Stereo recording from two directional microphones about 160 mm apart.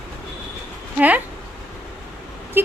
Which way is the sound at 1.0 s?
10° right (ahead or behind).